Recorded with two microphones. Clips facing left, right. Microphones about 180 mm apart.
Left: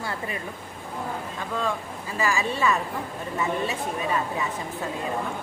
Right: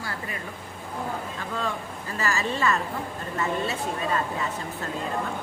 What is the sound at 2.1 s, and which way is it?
Speech, 15° left (ahead or behind).